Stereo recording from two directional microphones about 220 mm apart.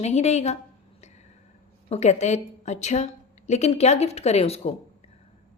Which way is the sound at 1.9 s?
30° left (ahead or behind).